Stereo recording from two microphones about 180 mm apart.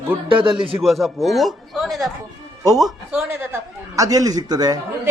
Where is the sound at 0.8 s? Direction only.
Centre (ahead or behind).